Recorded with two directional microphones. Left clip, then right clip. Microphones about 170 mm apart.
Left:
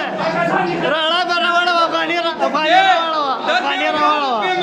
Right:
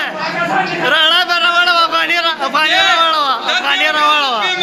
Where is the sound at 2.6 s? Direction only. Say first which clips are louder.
Even; 55° left (ahead or behind).